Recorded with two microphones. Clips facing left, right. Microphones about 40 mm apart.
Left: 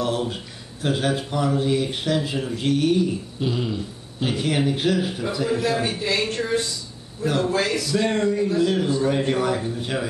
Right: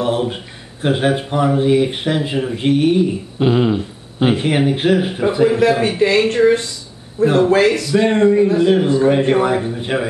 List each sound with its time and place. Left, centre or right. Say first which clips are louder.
0.0 s a sound: right 6 dB; right
0.8 s a man's voice: right 7 dB; right
3.3 s a man's voice: right 13 dB; right